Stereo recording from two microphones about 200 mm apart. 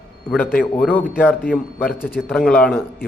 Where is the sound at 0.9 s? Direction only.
10° left (ahead or behind).